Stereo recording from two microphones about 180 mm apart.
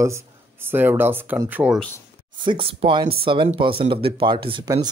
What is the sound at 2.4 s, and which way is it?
Speech, 30° right (ahead or behind).